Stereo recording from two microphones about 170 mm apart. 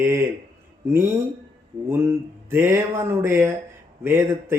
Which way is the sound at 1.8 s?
15° right (ahead or behind).